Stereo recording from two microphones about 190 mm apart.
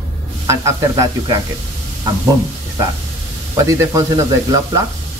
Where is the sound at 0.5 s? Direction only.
15° right (ahead or behind).